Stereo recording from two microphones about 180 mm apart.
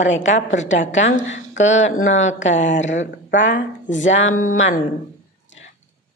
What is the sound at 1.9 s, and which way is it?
Speech, 40° left (ahead or behind).